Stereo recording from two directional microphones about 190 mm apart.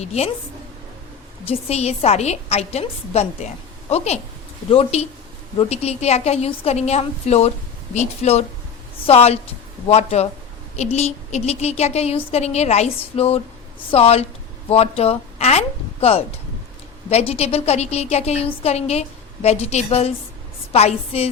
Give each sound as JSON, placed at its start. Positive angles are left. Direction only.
{"t": 0.0, "sound": "a woman's voice", "side_deg": 35}
{"t": 1.5, "sound": "a woman's voice", "side_deg": 35}